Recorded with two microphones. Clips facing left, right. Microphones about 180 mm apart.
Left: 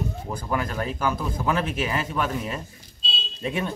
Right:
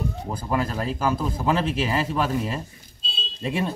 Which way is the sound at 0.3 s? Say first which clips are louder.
Right 3 dB; 30° right (ahead or behind).